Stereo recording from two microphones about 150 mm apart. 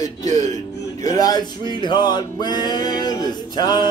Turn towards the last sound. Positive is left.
turn(degrees=30)  # may be behind; listen again after turning